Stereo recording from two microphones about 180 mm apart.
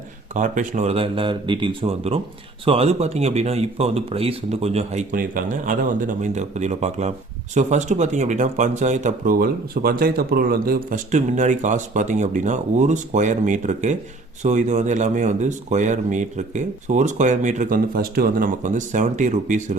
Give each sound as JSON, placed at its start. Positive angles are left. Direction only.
{"t": 0.3, "sound": "speech", "side_deg": -45}
{"t": 5.1, "sound": "speech", "side_deg": -50}